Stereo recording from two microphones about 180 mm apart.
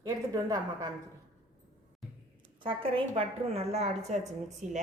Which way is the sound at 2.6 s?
30° right (ahead or behind).